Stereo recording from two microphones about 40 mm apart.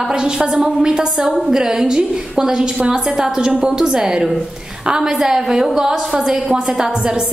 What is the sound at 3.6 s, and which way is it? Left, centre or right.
A woman's voice, centre.